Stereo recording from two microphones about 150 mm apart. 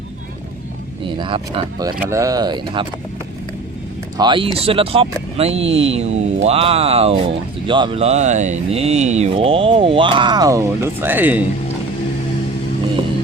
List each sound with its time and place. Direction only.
1.0 s speech: 35° right (ahead or behind)
4.2 s speech: 30° right (ahead or behind); by 11.4 s 10° right (ahead or behind)